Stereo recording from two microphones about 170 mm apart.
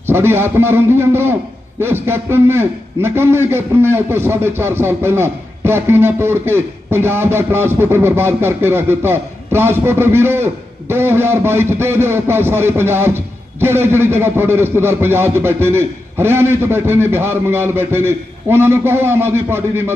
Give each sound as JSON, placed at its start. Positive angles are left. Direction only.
{"t": 0.1, "sound": "a man's voice", "side_deg": -15}